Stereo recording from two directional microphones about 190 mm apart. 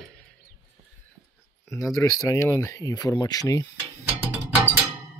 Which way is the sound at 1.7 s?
20° left (ahead or behind).